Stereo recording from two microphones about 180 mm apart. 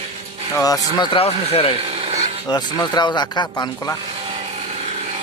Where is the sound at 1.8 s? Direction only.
35° right (ahead or behind).